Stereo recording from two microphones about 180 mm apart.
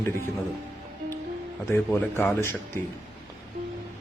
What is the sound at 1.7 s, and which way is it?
Speech, 10° left (ahead or behind).